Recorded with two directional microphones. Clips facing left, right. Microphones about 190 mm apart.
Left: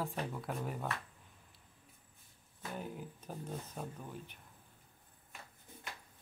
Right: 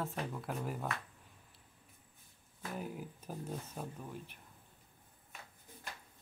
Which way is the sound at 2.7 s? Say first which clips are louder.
Right 1 dB; 5° right (ahead or behind).